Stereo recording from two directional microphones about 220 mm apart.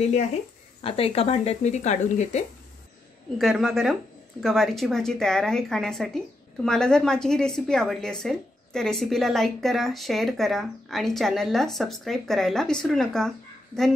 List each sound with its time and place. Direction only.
0.8 s speech: 25° left (ahead or behind)
3.3 s a woman's voice: centre (ahead or behind)